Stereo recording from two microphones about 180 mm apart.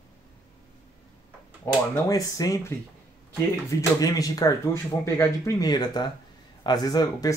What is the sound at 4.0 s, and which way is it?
Speech, 20° left (ahead or behind).